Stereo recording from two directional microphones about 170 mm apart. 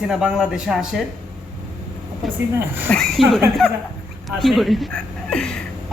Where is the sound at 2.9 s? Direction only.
Centre (ahead or behind).